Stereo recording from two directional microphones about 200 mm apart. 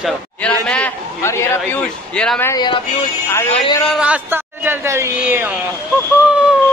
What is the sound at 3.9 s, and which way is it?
Speech, 5° right (ahead or behind).